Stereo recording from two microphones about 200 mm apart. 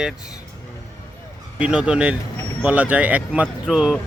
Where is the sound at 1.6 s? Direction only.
5° right (ahead or behind).